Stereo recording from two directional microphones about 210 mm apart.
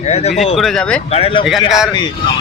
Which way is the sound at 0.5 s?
Centre (ahead or behind).